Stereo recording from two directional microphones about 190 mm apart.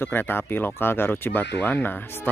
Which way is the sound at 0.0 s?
10° left (ahead or behind).